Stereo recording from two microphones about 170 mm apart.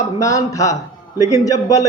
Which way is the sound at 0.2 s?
20° left (ahead or behind).